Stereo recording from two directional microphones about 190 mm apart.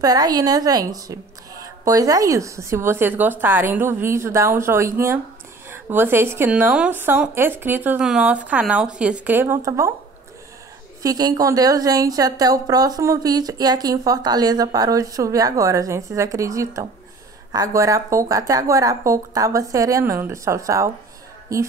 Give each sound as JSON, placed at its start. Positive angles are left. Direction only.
{"t": 0.0, "sound": "a woman's voice", "side_deg": -20}
{"t": 11.0, "sound": "a woman's voice", "side_deg": -20}